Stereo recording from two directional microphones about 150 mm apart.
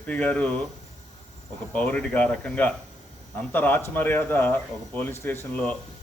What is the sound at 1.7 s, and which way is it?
A man's voice, 10° left (ahead or behind).